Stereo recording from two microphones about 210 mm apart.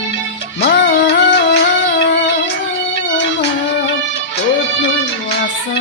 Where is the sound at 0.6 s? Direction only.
55° left (ahead or behind).